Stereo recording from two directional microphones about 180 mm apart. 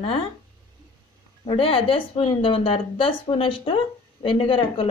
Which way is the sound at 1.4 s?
30° left (ahead or behind).